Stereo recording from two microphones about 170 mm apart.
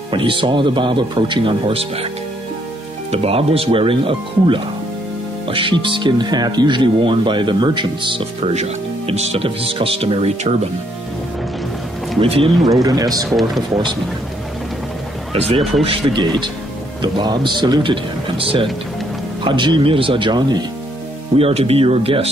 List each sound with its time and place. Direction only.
0.1 s speech: 30° right (ahead or behind)
3.1 s speech: 35° right (ahead or behind)
12.2 s speech: 35° right (ahead or behind)
12.8 s speech: 20° right (ahead or behind)
15.3 s speech: 35° right (ahead or behind)
21.4 s speech: 35° right (ahead or behind)